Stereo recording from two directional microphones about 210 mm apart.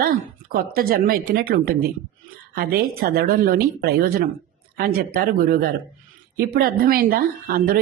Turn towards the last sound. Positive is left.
turn(degrees=-45)  # may be behind; listen again after turning